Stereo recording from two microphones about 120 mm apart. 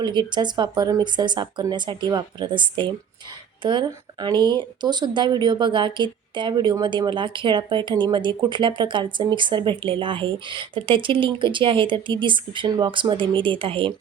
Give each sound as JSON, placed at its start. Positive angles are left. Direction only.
{"t": 0.0, "sound": "speech", "side_deg": -40}